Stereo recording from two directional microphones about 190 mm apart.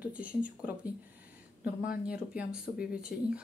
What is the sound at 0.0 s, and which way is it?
Speech, 5° right (ahead or behind).